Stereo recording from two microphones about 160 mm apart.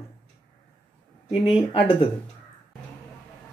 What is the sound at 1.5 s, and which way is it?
Speech, 30° left (ahead or behind).